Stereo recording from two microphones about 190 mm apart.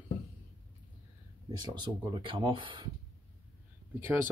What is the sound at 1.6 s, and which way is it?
Speech, 25° right (ahead or behind).